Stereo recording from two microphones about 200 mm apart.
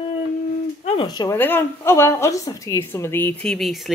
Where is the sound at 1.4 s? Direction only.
10° left (ahead or behind).